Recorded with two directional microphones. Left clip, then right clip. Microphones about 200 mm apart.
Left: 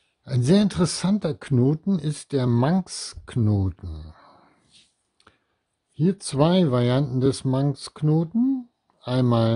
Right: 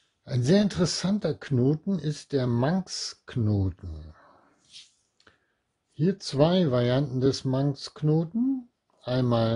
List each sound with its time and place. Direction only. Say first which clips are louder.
0.2 s speech: left 2 dB; 35° left (ahead or behind)
5.2 s a sound: left 3 dB; 35° left (ahead or behind)
5.9 s speech: left 1 dB; 35° left (ahead or behind)